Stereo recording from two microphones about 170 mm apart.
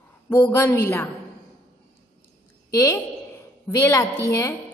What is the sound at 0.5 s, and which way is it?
Speech, 10° left (ahead or behind).